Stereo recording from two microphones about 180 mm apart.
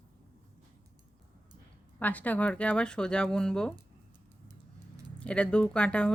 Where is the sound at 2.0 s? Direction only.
10° left (ahead or behind).